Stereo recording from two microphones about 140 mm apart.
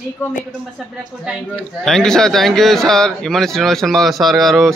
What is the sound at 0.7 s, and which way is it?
Speech, 5° right (ahead or behind).